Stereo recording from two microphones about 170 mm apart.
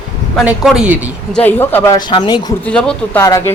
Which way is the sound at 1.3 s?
10° left (ahead or behind).